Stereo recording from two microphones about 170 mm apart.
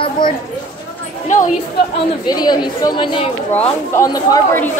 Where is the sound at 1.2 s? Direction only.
45° left (ahead or behind).